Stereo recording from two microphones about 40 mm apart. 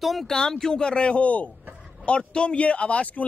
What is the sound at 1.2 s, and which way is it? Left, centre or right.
Speech, left.